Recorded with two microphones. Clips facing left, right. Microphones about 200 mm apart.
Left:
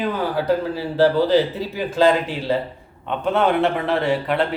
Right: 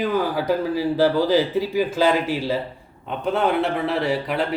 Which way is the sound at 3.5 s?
Centre (ahead or behind).